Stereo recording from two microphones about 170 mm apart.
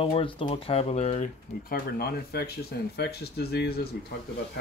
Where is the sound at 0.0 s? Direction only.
30° left (ahead or behind).